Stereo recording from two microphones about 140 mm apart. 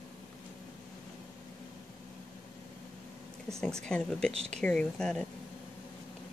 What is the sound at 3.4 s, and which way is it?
Speech, 5° left (ahead or behind).